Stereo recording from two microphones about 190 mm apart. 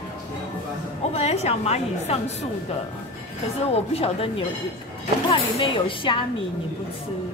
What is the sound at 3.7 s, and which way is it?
A woman's voice, 30° left (ahead or behind).